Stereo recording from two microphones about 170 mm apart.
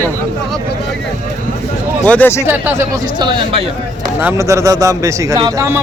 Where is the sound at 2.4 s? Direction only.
10° right (ahead or behind); by 3.6 s 30° right (ahead or behind).